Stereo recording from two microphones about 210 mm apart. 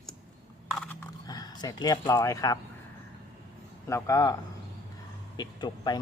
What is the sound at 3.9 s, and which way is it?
Speech, 15° left (ahead or behind).